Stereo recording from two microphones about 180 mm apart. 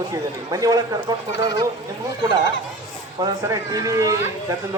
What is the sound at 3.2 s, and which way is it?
Speech, 20° right (ahead or behind).